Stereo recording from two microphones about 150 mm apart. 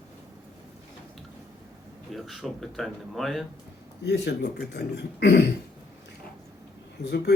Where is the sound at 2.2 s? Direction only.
Centre (ahead or behind).